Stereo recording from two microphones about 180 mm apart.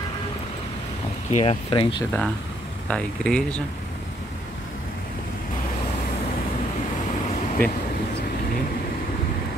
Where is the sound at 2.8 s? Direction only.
5° left (ahead or behind).